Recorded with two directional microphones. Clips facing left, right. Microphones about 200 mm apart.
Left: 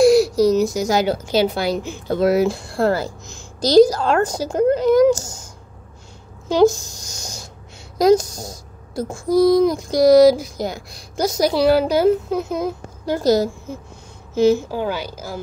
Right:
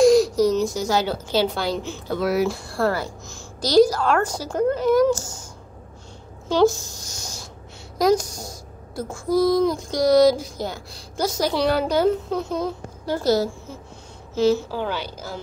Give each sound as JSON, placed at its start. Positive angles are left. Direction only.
{"t": 0.0, "sound": "a sound", "side_deg": 10}
{"t": 0.7, "sound": "a woman's voice", "side_deg": 15}
{"t": 2.1, "sound": "a child's voice", "side_deg": 25}
{"t": 6.5, "sound": "a woman's voice", "side_deg": 15}
{"t": 8.0, "sound": "a child's voice", "side_deg": 20}